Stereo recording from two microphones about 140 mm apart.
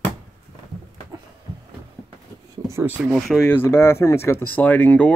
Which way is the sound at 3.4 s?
15° left (ahead or behind).